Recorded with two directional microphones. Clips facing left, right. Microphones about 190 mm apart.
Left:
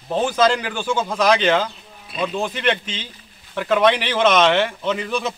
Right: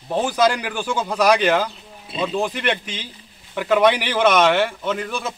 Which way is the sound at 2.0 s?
25° right (ahead or behind).